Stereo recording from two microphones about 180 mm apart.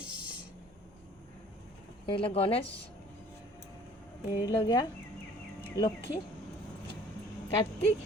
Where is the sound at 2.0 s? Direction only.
30° left (ahead or behind).